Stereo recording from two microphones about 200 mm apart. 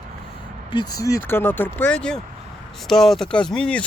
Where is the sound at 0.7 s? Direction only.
20° left (ahead or behind).